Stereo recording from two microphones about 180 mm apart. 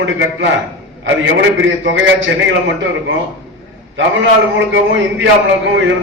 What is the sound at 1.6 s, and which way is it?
A man's voice, 90° right.